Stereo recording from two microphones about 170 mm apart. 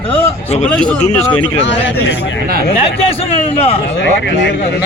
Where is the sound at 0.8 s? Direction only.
5° left (ahead or behind).